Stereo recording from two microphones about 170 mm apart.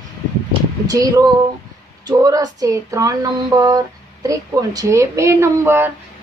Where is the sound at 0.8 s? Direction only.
20° right (ahead or behind).